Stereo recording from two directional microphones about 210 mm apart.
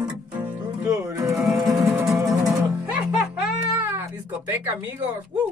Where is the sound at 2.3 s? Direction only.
15° right (ahead or behind).